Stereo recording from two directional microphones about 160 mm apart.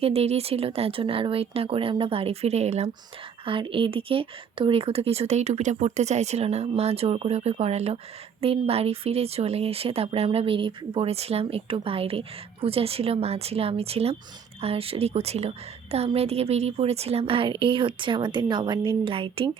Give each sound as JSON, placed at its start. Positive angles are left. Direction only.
{"t": 0.0, "sound": "speech", "side_deg": -40}